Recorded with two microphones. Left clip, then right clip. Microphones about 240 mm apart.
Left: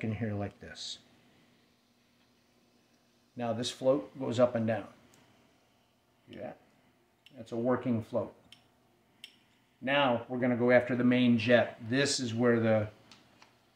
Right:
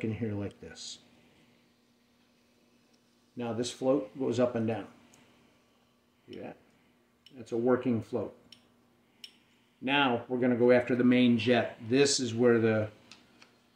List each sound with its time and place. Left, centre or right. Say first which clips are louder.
0.0 s speech: right 1 dB; left
3.3 s speech: even; left
7.2 s speech: right 3 dB; centre
9.9 s speech: right 1 dB; centre